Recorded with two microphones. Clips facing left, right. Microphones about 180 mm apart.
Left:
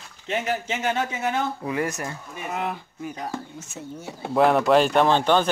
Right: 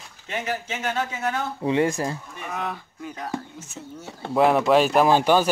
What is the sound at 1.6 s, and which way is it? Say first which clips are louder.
Speech: right 5 dB; 25° right (ahead or behind).